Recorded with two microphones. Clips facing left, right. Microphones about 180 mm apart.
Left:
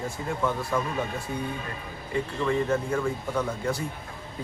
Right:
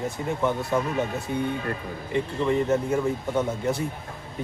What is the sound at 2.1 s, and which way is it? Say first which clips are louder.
Speech: right 2 dB; 20° right (ahead or behind).